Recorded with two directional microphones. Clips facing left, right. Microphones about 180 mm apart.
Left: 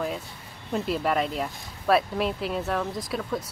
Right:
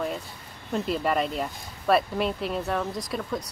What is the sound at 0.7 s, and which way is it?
Speech, centre (ahead or behind).